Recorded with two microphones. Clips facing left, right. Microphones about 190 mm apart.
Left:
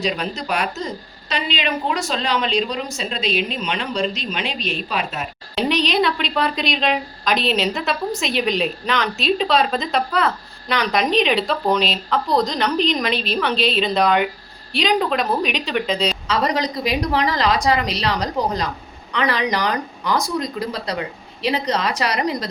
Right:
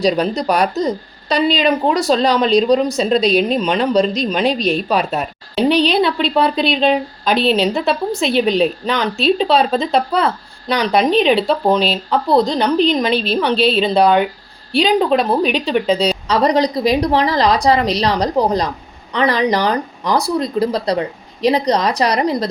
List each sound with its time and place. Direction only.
0.0 s a woman's voice: 35° right (ahead or behind)
12.1 s a woman's voice: 30° right (ahead or behind)
13.1 s a woman's voice: centre (ahead or behind)
13.3 s a woman's voice: 30° right (ahead or behind)